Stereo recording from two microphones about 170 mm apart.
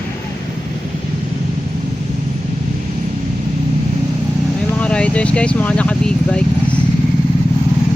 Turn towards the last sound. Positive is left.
turn(degrees=5)  # may be behind; listen again after turning